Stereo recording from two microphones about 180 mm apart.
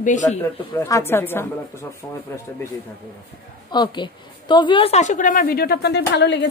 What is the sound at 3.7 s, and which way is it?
A woman's voice, 25° left (ahead or behind).